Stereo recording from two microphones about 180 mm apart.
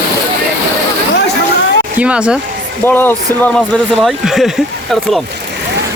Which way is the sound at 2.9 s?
10° left (ahead or behind).